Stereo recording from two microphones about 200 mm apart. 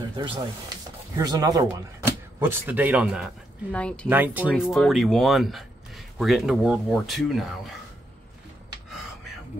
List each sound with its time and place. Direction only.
1.1 s speech: 20° right (ahead or behind); by 4.1 s 5° left (ahead or behind)
4.1 s speech: 10° right (ahead or behind)